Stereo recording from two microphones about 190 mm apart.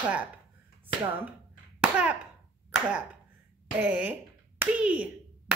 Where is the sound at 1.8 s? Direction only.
5° right (ahead or behind).